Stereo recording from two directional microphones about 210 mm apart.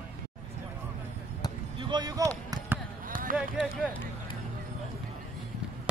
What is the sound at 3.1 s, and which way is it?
Run, 40° right (ahead or behind).